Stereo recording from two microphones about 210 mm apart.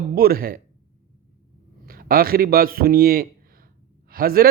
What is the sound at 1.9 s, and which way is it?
A man's voice, 45° right (ahead or behind).